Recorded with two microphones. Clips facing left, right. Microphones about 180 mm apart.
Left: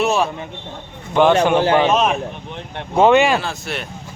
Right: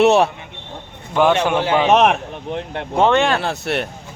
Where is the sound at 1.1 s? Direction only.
Centre (ahead or behind).